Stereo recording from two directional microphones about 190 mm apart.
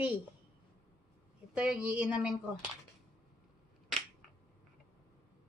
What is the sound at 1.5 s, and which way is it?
Speech, 5° right (ahead or behind).